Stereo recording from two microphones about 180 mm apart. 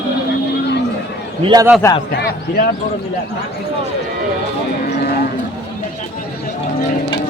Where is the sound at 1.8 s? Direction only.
15° left (ahead or behind).